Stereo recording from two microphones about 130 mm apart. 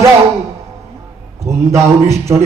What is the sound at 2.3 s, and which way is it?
Music, 25° right (ahead or behind).